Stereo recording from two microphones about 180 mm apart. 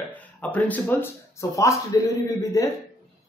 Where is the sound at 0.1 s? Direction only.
10° left (ahead or behind).